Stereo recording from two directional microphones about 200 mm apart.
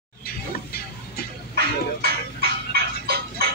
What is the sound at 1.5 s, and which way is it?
Music, 50° right (ahead or behind).